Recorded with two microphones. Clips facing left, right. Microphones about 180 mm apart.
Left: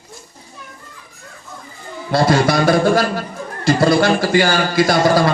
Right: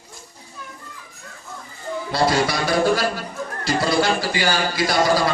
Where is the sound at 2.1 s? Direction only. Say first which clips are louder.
Left 6 dB; 50° left (ahead or behind).